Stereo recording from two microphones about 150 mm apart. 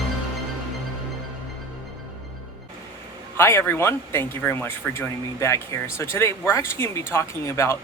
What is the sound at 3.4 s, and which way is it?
Speech, 15° left (ahead or behind).